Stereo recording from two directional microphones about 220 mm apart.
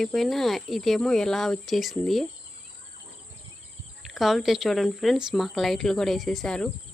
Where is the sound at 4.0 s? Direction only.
Centre (ahead or behind).